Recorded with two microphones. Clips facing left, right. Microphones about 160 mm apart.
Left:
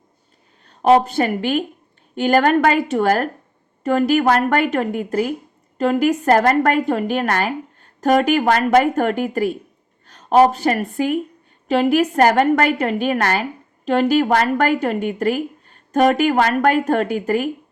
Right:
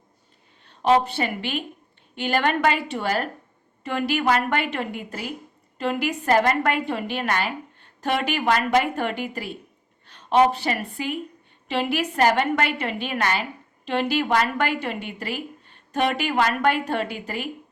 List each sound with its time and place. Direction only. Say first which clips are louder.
0.6 s a woman's voice: left 5 dB; 45° left (ahead or behind)